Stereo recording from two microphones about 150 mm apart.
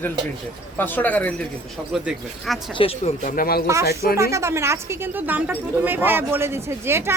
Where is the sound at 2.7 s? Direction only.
40° left (ahead or behind).